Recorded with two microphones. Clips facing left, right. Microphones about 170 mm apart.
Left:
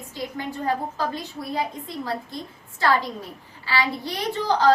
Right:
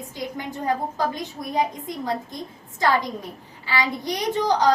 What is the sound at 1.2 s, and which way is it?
A woman's voice, 20° right (ahead or behind).